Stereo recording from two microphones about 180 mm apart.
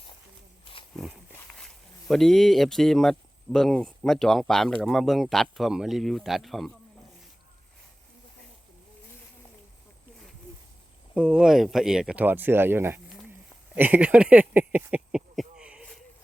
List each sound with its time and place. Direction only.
0.6 s roaring cats: 30° left (ahead or behind)
1.5 s speech: 5° left (ahead or behind)
11.1 s speech: 5° right (ahead or behind)
13.7 s a sound: 10° right (ahead or behind)